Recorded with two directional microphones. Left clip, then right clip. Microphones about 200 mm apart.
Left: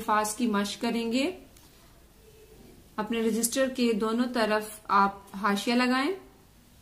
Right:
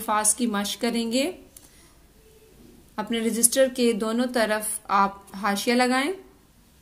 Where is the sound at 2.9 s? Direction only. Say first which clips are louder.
Right 2 dB; 35° right (ahead or behind).